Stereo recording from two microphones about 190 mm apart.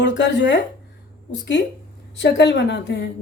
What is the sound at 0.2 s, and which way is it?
A woman's voice, 65° left (ahead or behind).